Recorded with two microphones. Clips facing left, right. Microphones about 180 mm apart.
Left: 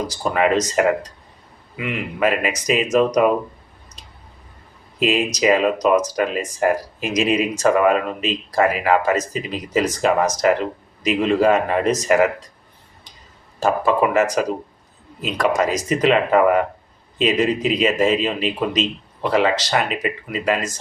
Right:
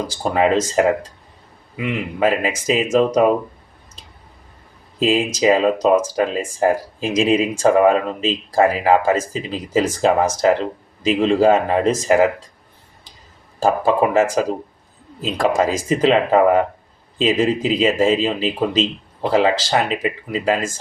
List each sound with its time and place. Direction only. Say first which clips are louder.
0.1 s speech: right 2 dB; 30° right (ahead or behind)
4.9 s speech: right 2 dB; 30° right (ahead or behind)
13.6 s speech: right 1 dB; 30° right (ahead or behind)